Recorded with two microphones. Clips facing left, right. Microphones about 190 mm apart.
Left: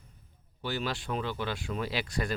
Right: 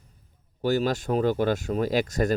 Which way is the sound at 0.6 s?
45° right (ahead or behind).